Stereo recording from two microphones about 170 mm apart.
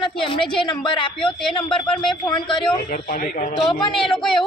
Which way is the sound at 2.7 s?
55° left (ahead or behind).